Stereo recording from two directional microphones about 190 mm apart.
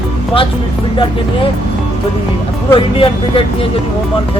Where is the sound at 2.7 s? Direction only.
25° left (ahead or behind).